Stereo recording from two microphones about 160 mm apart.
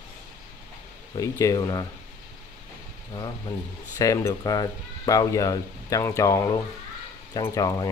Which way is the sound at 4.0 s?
20° left (ahead or behind).